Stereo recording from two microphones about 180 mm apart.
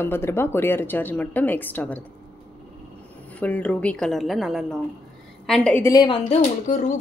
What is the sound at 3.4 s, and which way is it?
A woman's voice, 10° left (ahead or behind).